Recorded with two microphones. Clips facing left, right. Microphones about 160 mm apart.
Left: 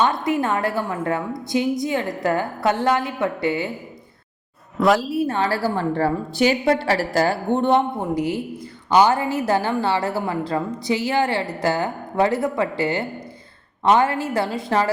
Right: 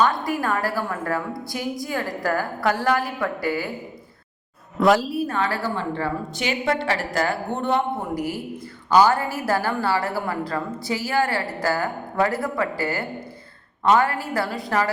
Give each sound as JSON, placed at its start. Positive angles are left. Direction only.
{"t": 0.0, "sound": "a woman's voice", "side_deg": 25}
{"t": 4.8, "sound": "a woman's voice", "side_deg": 0}
{"t": 5.1, "sound": "a woman's voice", "side_deg": 30}